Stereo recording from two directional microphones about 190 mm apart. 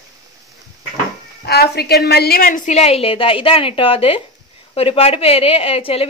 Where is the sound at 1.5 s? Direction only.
55° left (ahead or behind); by 6.0 s 30° left (ahead or behind).